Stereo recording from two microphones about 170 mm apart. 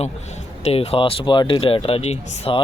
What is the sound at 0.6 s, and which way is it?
Speech, 40° left (ahead or behind).